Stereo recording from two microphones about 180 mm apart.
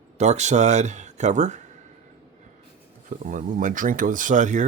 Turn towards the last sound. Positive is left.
turn(degrees=-45)  # may be behind; listen again after turning